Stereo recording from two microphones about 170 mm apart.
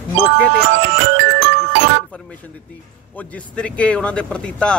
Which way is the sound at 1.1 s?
90° right.